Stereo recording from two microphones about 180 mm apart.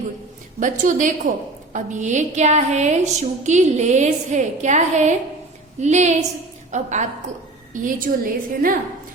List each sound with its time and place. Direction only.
0.6 s a woman's voice: 45° right (ahead or behind)